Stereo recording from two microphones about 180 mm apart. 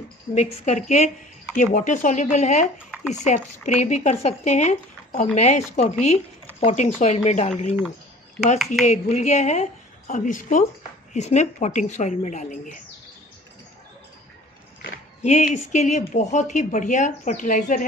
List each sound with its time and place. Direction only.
0.3 s speech: 40° left (ahead or behind)
8.8 s speech: 40° left (ahead or behind)
15.2 s speech: 40° left (ahead or behind)